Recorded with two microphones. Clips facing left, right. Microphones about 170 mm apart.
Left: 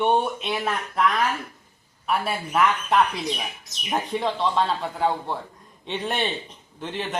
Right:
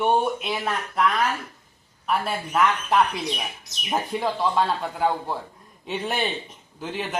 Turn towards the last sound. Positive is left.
turn(degrees=0)  # may be behind; listen again after turning